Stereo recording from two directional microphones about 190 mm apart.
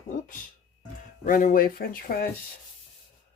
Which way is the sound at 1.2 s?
45° left (ahead or behind).